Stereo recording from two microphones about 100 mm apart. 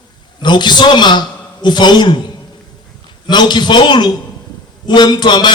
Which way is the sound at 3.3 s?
50° left (ahead or behind).